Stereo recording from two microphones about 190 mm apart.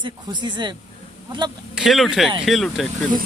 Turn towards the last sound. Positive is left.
turn(degrees=0)  # may be behind; listen again after turning